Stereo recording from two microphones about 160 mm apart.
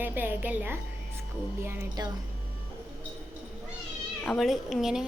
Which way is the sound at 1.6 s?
20° right (ahead or behind).